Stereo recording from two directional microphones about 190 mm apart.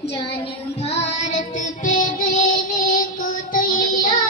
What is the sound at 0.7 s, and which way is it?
Child singing, 35° left (ahead or behind).